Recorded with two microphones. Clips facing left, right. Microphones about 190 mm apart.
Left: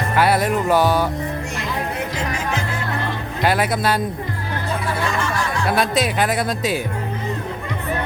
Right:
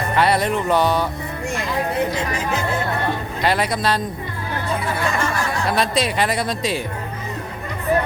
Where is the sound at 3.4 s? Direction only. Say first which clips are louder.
Left 2 dB; 5° left (ahead or behind).